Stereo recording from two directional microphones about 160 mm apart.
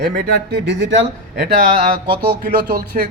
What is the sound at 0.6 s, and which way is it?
Speech, 90° right.